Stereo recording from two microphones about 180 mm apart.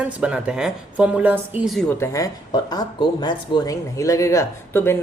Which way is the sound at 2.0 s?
20° left (ahead or behind).